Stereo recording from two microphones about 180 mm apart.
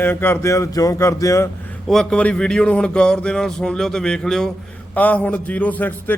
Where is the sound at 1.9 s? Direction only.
5° left (ahead or behind).